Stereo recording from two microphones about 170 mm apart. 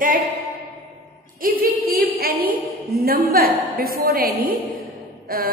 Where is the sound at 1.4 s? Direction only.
55° right (ahead or behind).